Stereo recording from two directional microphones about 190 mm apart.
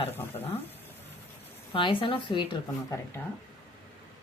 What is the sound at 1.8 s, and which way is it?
Speech, 25° left (ahead or behind).